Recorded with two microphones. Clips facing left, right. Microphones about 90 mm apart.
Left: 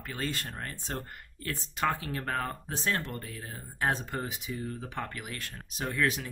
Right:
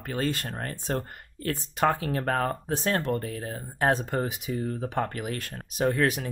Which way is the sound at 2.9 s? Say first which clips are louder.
Right 8 dB; 50° right (ahead or behind).